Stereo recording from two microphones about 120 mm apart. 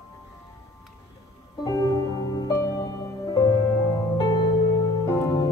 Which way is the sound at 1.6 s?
30° left (ahead or behind).